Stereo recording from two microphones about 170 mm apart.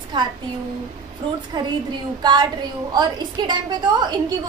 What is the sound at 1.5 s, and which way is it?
A woman's voice, 25° right (ahead or behind).